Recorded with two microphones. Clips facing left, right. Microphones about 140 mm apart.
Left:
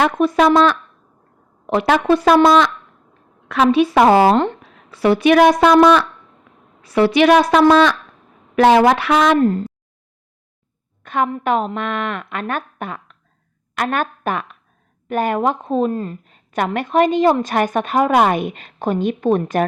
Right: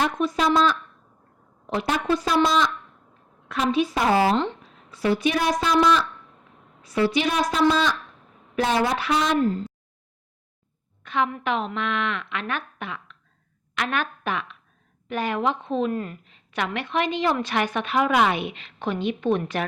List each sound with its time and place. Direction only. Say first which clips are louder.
0.0 s a woman's voice: left 8 dB; 60° left (ahead or behind)
8.5 s speech: left 11 dB; 85° left
9.4 s a woman's voice: left 7 dB; 55° left (ahead or behind)
11.0 s a sound: left 5 dB; 50° left (ahead or behind)
11.3 s a woman's voice: left 7 dB; 40° left (ahead or behind)
16.2 s a woman's voice: left 7 dB; 45° left (ahead or behind)